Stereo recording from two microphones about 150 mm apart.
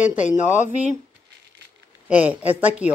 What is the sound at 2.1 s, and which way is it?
Speech, 10° right (ahead or behind).